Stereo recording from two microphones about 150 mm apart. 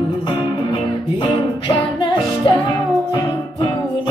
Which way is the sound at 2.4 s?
35° left (ahead or behind).